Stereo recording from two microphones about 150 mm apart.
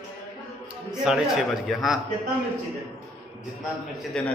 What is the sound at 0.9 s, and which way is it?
A man's voice, 5° right (ahead or behind).